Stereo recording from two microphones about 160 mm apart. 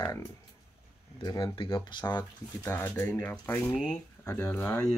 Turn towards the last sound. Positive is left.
turn(degrees=10)  # may be behind; listen again after turning